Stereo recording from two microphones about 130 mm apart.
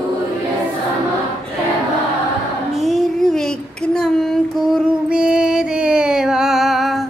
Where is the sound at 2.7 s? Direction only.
Centre (ahead or behind).